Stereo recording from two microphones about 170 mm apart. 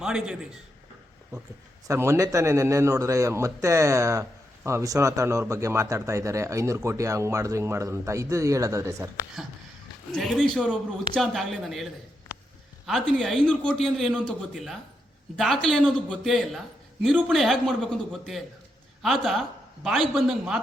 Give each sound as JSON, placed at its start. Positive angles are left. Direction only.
{"t": 0.0, "sound": "a man's voice", "side_deg": -5}
{"t": 1.9, "sound": "a man's voice", "side_deg": -20}
{"t": 10.2, "sound": "a man's voice", "side_deg": 0}